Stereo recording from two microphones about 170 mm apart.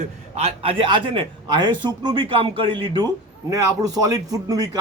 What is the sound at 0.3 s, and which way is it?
Speech, 35° right (ahead or behind).